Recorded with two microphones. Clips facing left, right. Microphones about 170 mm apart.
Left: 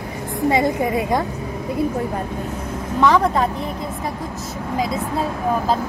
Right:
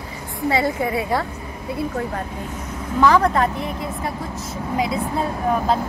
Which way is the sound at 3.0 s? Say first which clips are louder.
Even; centre (ahead or behind).